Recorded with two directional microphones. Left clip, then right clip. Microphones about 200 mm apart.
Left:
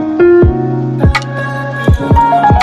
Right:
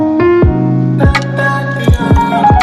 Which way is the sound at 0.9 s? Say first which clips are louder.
Right 3 dB; centre (ahead or behind).